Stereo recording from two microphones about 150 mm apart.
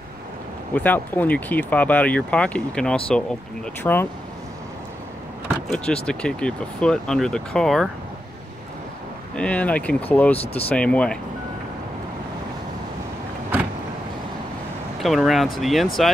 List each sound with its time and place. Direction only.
0.7 s speech: 10° left (ahead or behind)
6.0 s speech: 5° left (ahead or behind)
9.4 s speech: 10° left (ahead or behind)
10.4 s speech: 40° left (ahead or behind)
10.7 s speech: 10° left (ahead or behind)
15.0 s speech: centre (ahead or behind)